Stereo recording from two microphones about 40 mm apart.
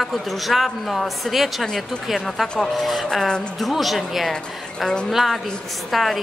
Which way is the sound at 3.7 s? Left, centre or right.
Centre.